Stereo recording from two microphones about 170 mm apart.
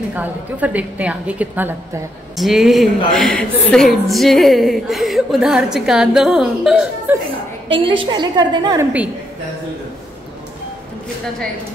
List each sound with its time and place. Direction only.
0.1 s a woman's voice: 10° right (ahead or behind)
7.8 s a woman's voice: 30° right (ahead or behind)